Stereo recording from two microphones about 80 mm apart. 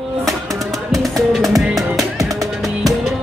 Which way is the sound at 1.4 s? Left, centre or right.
Centre.